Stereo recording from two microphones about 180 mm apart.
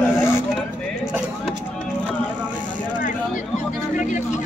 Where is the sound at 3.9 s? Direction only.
45° left (ahead or behind).